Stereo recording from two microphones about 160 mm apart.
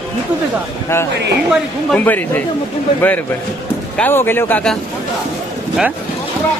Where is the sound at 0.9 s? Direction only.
15° left (ahead or behind).